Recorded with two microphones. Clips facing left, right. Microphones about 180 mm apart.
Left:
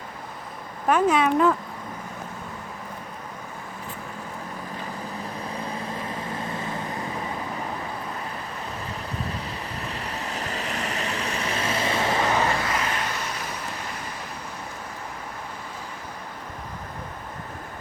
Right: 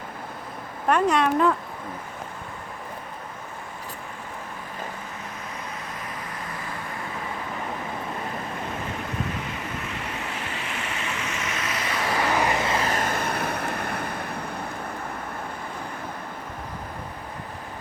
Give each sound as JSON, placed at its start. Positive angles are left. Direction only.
{"t": 0.9, "sound": "speech", "side_deg": 0}
{"t": 5.9, "sound": "vehicle", "side_deg": 30}
{"t": 9.4, "sound": "waves", "side_deg": 35}
{"t": 12.4, "sound": "vehicle", "side_deg": -20}
{"t": 12.9, "sound": "vehicle", "side_deg": -50}